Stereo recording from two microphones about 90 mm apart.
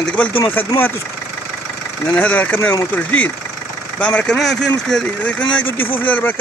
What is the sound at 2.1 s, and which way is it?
Speech, 15° left (ahead or behind).